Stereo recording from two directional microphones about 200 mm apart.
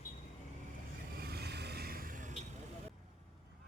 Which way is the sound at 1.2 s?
50° right (ahead or behind).